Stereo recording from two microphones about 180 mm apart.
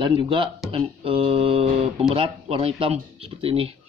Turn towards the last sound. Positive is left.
turn(degrees=-30)  # may be behind; listen again after turning